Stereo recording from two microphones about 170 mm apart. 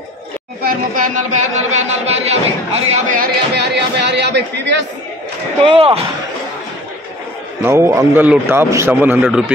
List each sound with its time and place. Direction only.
0.6 s speech: 50° right (ahead or behind)
3.2 s speech: 85° right
5.6 s speech: 30° right (ahead or behind)
7.6 s a man's voice: 15° right (ahead or behind)